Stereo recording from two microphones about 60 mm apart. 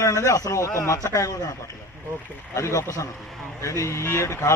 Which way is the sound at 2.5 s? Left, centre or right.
Left.